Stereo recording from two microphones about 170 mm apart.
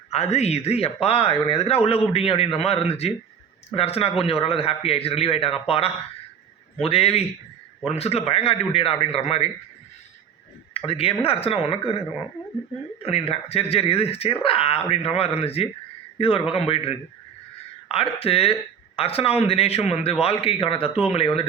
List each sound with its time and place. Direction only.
0.1 s speech: 40° left (ahead or behind)
10.8 s speech: 35° left (ahead or behind)